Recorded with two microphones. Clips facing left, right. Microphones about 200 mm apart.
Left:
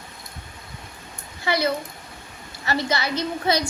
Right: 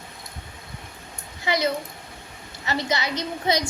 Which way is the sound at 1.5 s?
20° right (ahead or behind).